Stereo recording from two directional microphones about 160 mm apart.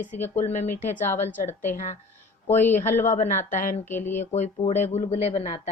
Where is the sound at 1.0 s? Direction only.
15° left (ahead or behind).